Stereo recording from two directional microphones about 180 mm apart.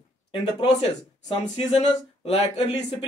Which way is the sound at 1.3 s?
35° left (ahead or behind).